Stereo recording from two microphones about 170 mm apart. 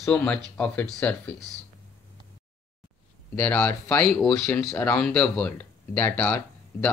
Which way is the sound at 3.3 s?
10° left (ahead or behind).